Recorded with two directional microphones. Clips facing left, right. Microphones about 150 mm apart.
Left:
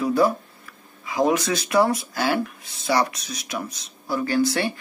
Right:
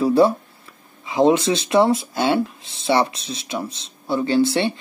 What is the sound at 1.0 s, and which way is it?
Speech, 25° right (ahead or behind).